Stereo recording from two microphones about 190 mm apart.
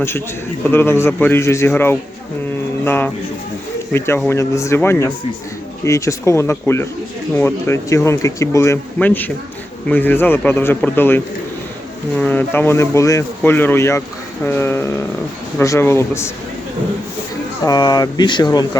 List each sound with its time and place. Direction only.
0.6 s speech: 10° left (ahead or behind)
17.7 s speech: 20° left (ahead or behind)